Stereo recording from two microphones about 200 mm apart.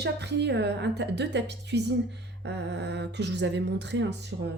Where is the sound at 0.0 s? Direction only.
60° right (ahead or behind).